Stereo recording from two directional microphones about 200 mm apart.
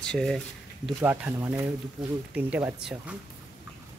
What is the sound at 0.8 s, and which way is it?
Speech, 10° right (ahead or behind).